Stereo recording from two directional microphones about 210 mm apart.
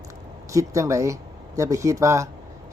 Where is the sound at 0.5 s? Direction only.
15° right (ahead or behind).